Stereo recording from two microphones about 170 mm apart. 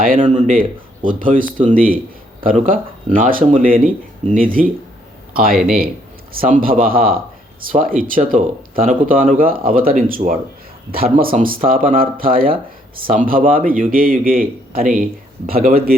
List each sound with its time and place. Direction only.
0.3 s a man's voice: 45° right (ahead or behind)